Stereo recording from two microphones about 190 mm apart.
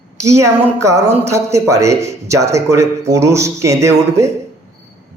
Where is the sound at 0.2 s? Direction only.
15° right (ahead or behind).